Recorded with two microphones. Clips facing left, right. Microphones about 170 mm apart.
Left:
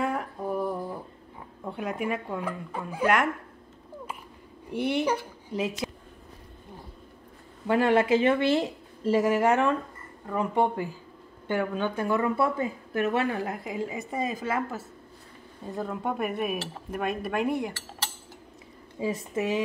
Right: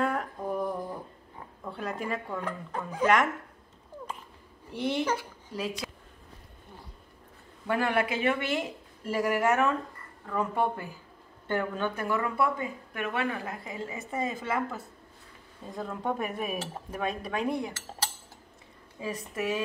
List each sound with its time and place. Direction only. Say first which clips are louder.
0.0 s a sound: even; 5° left (ahead or behind)
1.6 s speech: left 4 dB; 15° left (ahead or behind)
4.7 s speech: left 3 dB; 10° left (ahead or behind)
5.5 s speech: left 4 dB; 20° left (ahead or behind)
7.6 s speech: left 5 dB; 20° left (ahead or behind)
15.8 s speech: left 2 dB; 10° left (ahead or behind)
18.9 s speech: left 5 dB; 25° left (ahead or behind)